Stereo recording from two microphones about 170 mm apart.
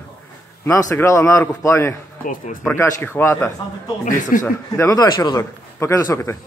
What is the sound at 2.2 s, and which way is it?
Speech, 55° left (ahead or behind).